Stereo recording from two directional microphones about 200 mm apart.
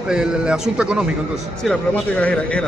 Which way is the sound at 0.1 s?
5° right (ahead or behind).